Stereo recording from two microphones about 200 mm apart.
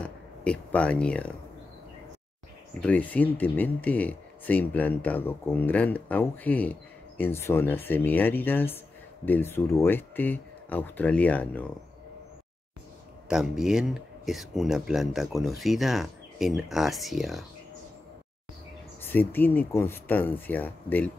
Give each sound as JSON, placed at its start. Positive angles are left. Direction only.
{"t": 0.0, "sound": "a sound", "side_deg": 5}
{"t": 2.8, "sound": "speech", "side_deg": 5}
{"t": 13.3, "sound": "speech", "side_deg": 0}
{"t": 18.9, "sound": "speech", "side_deg": 10}